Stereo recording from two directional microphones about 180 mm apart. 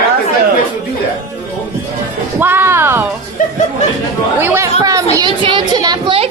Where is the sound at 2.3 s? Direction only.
10° right (ahead or behind).